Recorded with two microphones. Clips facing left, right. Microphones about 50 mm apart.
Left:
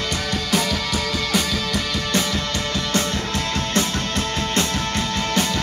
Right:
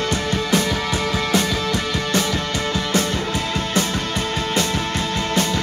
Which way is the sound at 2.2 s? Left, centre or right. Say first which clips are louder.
Right 2 dB; centre.